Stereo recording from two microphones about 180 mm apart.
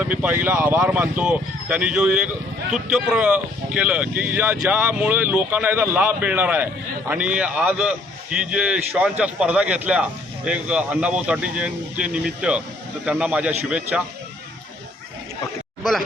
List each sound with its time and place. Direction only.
0.0 s a man's voice: 10° right (ahead or behind)
15.8 s speech: centre (ahead or behind)